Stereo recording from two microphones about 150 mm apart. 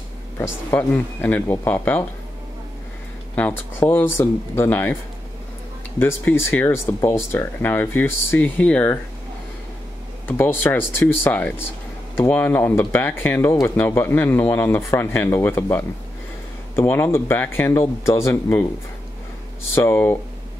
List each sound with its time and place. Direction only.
0.4 s speech: 15° left (ahead or behind)
3.3 s speech: 10° left (ahead or behind)
5.9 s speech: 15° left (ahead or behind)
10.2 s speech: 15° left (ahead or behind)
19.7 s speech: 15° left (ahead or behind)